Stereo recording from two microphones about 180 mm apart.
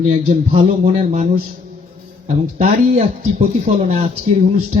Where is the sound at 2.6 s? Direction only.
40° right (ahead or behind).